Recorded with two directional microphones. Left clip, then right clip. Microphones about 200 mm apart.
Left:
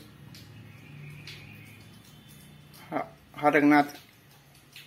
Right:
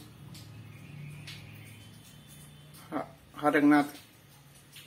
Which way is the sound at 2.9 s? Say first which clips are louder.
Left 4 dB; 10° left (ahead or behind).